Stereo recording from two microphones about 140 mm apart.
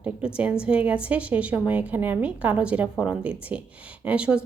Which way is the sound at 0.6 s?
10° right (ahead or behind).